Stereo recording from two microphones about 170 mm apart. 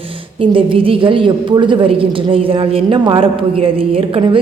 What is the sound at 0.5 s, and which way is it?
A woman's voice, 30° right (ahead or behind).